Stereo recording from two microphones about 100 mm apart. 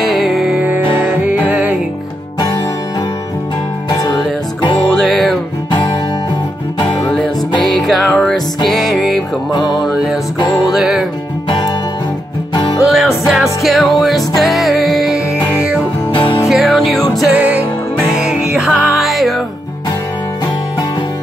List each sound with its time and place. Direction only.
0.0 s music: centre (ahead or behind)
0.6 s music: 15° right (ahead or behind)
3.9 s music: 35° left (ahead or behind)
4.9 s music: centre (ahead or behind)
7.6 s music: centre (ahead or behind)
9.5 s music: 50° left (ahead or behind)
9.8 s music: centre (ahead or behind)
12.8 s music: 5° right (ahead or behind)
16.1 s music: 60° left (ahead or behind)
16.4 s music: centre (ahead or behind)
17.3 s music: 15° right (ahead or behind); by 19.4 s centre (ahead or behind)